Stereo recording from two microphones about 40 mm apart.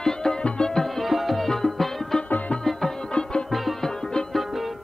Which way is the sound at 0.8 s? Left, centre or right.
Centre.